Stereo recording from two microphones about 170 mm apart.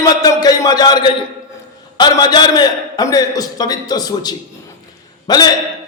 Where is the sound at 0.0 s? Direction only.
20° left (ahead or behind).